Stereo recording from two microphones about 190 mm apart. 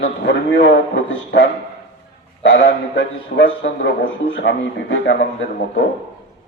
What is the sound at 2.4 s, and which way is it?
Speech, 80° left.